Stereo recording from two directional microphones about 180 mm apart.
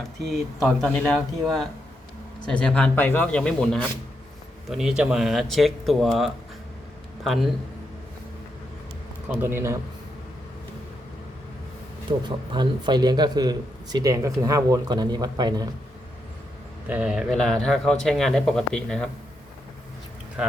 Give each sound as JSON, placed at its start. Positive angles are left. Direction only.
{"t": 0.2, "sound": "a man's voice", "side_deg": 0}
{"t": 9.3, "sound": "a man's voice", "side_deg": -10}
{"t": 12.1, "sound": "speech", "side_deg": -30}
{"t": 16.8, "sound": "a man's voice", "side_deg": -5}
{"t": 20.4, "sound": "speech", "side_deg": -5}